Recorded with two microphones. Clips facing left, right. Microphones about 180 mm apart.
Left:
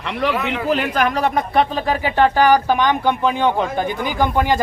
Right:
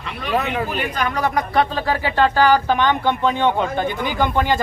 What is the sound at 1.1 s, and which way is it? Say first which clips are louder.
Speech: left 2 dB; 25° left (ahead or behind).